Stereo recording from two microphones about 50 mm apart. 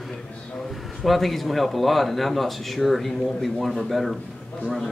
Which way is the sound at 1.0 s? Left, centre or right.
Centre.